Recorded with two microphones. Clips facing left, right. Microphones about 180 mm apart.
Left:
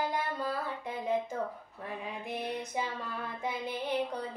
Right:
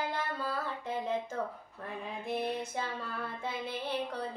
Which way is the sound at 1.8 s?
15° left (ahead or behind).